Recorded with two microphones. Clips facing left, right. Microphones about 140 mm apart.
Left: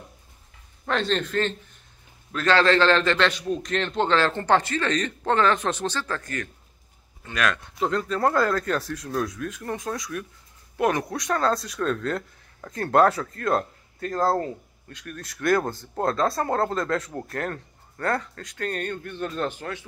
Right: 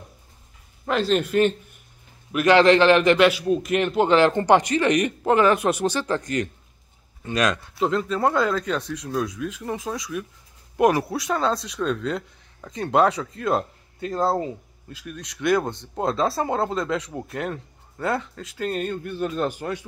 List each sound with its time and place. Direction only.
0.8 s a man's voice: 5° right (ahead or behind)
7.8 s speech: 5° right (ahead or behind)